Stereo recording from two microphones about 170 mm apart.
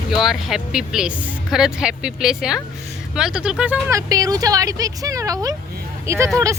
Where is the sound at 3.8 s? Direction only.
20° right (ahead or behind).